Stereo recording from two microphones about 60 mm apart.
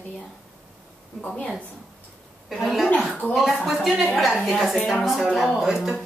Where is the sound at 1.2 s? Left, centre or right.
Left.